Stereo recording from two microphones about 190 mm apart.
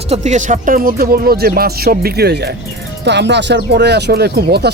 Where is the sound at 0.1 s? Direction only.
35° right (ahead or behind).